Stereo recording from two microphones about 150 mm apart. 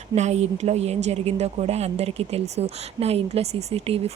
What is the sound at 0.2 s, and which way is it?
Speech, 50° right (ahead or behind).